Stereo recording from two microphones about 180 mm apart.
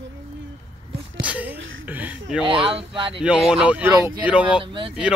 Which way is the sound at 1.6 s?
90° right.